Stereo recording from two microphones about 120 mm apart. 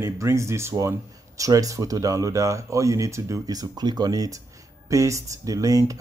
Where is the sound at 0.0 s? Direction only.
25° right (ahead or behind).